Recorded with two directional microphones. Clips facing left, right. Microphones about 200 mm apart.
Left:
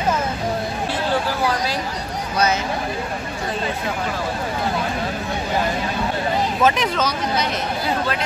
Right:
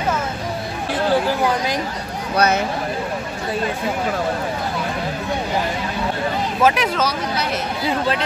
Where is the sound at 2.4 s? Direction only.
60° right (ahead or behind).